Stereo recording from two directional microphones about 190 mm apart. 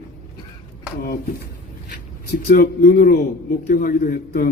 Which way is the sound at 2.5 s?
55° left (ahead or behind).